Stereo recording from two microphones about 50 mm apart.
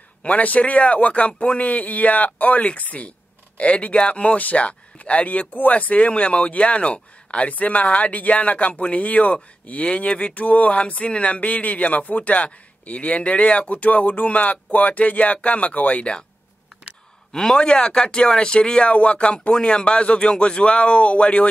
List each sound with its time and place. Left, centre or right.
0.2 s speech: left
17.3 s speech: centre